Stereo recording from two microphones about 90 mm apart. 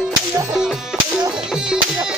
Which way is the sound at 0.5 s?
5° right (ahead or behind).